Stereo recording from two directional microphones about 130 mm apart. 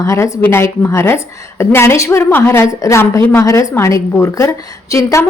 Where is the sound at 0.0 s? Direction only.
25° left (ahead or behind).